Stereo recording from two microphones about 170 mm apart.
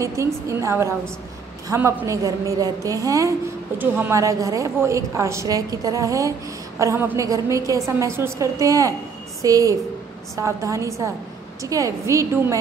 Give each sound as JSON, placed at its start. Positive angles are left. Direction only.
{"t": 0.0, "sound": "a woman's voice", "side_deg": -15}